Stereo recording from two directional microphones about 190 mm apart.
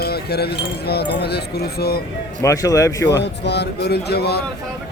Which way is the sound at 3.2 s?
60° left (ahead or behind).